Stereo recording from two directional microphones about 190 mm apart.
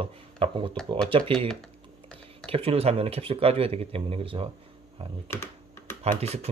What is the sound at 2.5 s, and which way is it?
Speech, 30° right (ahead or behind).